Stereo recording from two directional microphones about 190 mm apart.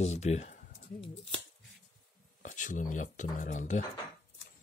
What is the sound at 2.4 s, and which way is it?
Speech, 40° left (ahead or behind).